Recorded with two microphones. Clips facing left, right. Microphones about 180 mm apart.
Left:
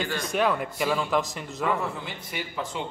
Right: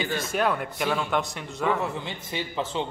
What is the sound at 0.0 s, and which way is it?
A man's voice, centre (ahead or behind).